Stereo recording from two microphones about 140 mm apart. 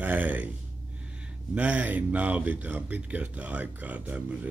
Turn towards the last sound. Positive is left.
turn(degrees=-10)  # may be behind; listen again after turning